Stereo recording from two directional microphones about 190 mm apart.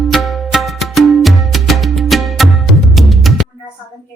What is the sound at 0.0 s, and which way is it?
Music, centre (ahead or behind).